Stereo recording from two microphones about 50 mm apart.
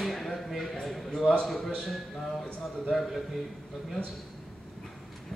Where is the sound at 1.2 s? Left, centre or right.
Centre.